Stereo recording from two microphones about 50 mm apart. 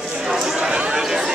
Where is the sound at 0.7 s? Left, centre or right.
Centre.